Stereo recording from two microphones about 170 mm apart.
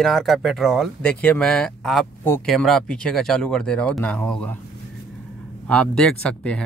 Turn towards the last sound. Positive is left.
turn(degrees=5)  # may be behind; listen again after turning